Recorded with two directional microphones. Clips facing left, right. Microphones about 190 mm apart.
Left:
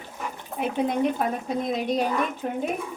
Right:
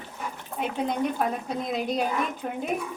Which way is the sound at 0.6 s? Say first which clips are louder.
Left 3 dB; centre (ahead or behind).